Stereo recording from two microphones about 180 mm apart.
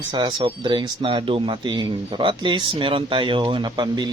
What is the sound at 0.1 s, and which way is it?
Speech, 25° right (ahead or behind).